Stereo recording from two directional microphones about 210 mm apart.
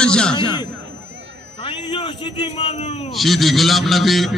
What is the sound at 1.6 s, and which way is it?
Speech, 25° left (ahead or behind).